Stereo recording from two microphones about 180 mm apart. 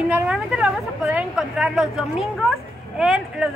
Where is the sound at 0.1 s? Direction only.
5° right (ahead or behind).